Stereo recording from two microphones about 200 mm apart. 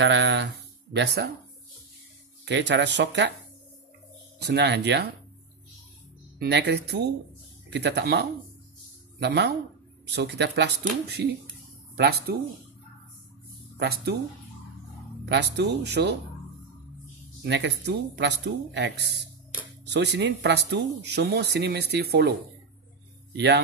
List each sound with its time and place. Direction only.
0.0 s speech: 65° right (ahead or behind)
2.4 s speech: 60° right (ahead or behind)
4.4 s speech: 60° right (ahead or behind)
6.4 s speech: 55° right (ahead or behind)
13.7 s speech: 55° right (ahead or behind)
15.2 s speech: 60° right (ahead or behind)
17.5 s speech: 60° right (ahead or behind)
23.3 s speech: 55° right (ahead or behind)